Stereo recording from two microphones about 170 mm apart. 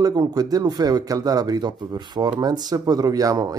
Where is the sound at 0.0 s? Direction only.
25° right (ahead or behind).